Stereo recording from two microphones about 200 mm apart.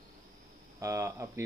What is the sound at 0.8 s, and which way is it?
Speech, 15° right (ahead or behind).